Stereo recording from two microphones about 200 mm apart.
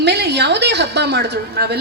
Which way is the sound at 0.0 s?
55° right (ahead or behind).